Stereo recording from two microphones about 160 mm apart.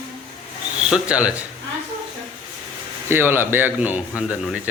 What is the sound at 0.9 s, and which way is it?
Speech, 5° right (ahead or behind).